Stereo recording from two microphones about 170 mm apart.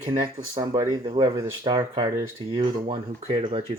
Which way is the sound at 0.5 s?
20° right (ahead or behind).